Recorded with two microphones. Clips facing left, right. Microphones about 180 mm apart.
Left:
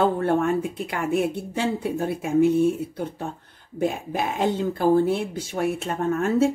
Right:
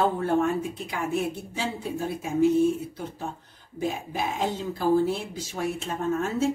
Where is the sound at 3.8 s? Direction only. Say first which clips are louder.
Left 4 dB; 60° left (ahead or behind).